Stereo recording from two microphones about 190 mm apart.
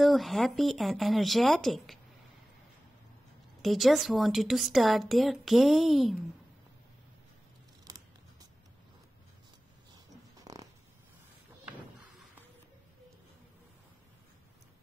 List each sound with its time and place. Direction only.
0.0 s a woman's voice: centre (ahead or behind)
3.6 s a woman's voice: centre (ahead or behind)
7.9 s scissors: 20° right (ahead or behind)
10.3 s zipper: 20° right (ahead or behind)